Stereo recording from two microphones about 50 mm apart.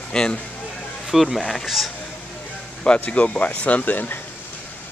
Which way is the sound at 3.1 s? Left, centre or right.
Left.